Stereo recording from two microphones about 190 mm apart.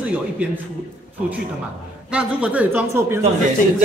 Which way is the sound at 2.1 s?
5° right (ahead or behind).